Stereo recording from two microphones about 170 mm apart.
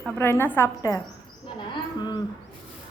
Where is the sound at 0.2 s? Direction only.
15° left (ahead or behind).